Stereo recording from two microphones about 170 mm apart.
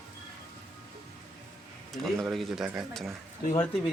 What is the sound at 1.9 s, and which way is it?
Speech, centre (ahead or behind).